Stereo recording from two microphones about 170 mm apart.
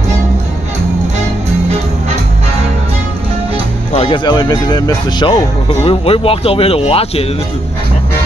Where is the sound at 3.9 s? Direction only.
30° left (ahead or behind).